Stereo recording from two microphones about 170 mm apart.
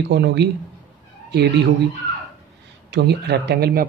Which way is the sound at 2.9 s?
75° right (ahead or behind).